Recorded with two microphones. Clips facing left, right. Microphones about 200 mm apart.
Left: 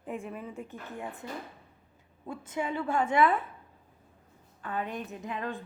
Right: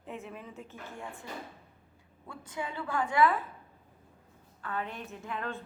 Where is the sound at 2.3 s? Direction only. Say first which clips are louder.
Left 6 dB; 20° left (ahead or behind).